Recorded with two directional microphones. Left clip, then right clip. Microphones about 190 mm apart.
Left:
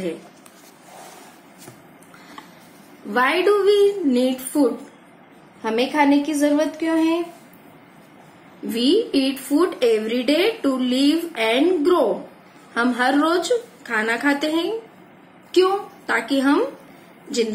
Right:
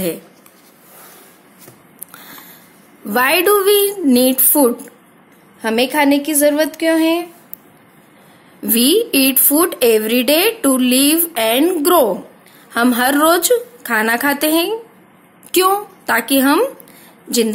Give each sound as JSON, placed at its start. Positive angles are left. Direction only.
{"t": 3.1, "sound": "a woman's voice", "side_deg": -60}
{"t": 5.6, "sound": "a woman's voice", "side_deg": -50}
{"t": 8.7, "sound": "a woman's voice", "side_deg": -60}